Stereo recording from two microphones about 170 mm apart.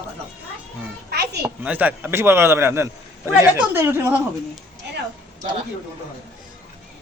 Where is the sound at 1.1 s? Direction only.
70° right (ahead or behind).